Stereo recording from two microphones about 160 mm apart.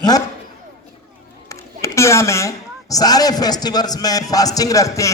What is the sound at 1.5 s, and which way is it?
A woman's voice, 20° left (ahead or behind).